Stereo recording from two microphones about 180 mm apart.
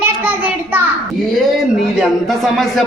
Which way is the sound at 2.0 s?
Centre (ahead or behind).